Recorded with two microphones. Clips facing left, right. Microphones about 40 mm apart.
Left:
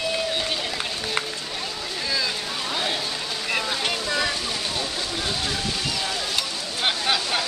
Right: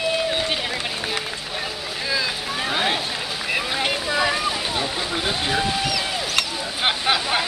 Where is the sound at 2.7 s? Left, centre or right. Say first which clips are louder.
Right 5 dB; right.